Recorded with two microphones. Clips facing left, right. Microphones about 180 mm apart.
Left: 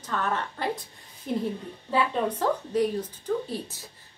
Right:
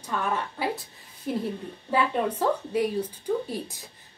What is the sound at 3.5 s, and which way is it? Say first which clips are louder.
Speech: right 1 dB; 15° right (ahead or behind).